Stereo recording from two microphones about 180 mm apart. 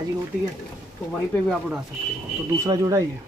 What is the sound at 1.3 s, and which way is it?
Speech, centre (ahead or behind).